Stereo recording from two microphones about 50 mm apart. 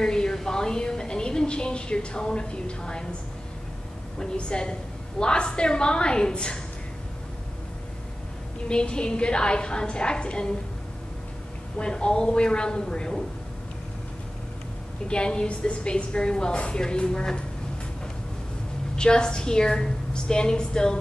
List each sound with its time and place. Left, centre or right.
0.0 s a sound: centre
4.2 s a woman's voice: centre
8.6 s a woman's voice: centre
11.8 s a woman's voice: centre
15.0 s a woman's voice: centre
18.9 s a woman's voice: centre